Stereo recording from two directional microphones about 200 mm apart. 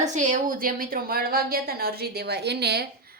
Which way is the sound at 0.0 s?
35° right (ahead or behind).